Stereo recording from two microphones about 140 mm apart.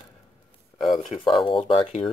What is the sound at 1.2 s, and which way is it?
Speech, 40° left (ahead or behind).